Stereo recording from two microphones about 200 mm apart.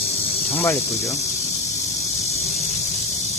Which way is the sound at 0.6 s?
15° left (ahead or behind).